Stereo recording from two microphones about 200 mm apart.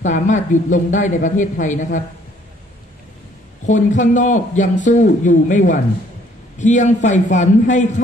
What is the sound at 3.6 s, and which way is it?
Speech, 40° left (ahead or behind).